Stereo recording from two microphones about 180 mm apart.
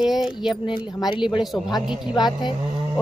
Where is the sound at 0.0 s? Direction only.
5° right (ahead or behind).